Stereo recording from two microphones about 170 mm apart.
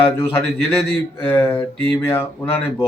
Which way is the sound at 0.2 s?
10° left (ahead or behind).